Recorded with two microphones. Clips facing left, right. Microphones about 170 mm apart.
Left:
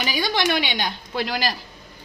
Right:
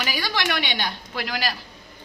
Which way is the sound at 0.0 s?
20° left (ahead or behind).